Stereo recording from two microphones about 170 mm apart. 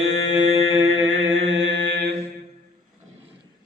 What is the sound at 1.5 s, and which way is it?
Mantra, 90° right.